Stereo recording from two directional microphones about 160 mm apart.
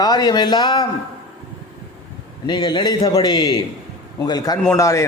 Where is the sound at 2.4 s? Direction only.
30° left (ahead or behind).